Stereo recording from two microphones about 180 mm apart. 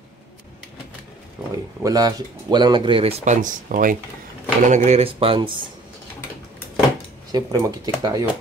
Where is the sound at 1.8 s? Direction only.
20° right (ahead or behind).